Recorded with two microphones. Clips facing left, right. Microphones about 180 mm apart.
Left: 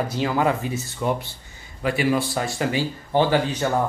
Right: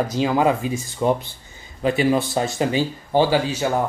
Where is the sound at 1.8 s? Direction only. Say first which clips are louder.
Right 3 dB; 25° right (ahead or behind).